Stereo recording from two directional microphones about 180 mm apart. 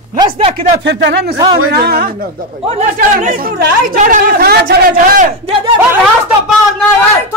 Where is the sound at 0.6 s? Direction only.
70° right (ahead or behind).